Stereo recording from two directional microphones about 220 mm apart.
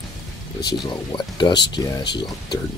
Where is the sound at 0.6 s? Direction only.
20° left (ahead or behind).